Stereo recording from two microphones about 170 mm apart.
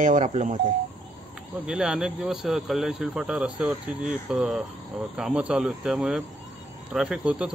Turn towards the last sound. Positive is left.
turn(degrees=-5)  # may be behind; listen again after turning